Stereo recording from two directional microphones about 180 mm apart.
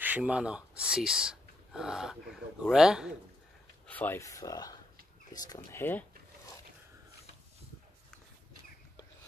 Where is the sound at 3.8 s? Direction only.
10° left (ahead or behind).